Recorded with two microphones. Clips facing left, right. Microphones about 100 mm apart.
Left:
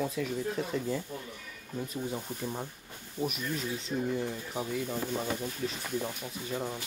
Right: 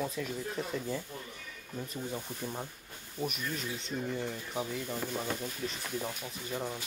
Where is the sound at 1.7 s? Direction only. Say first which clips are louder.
Left 3 dB; 10° left (ahead or behind).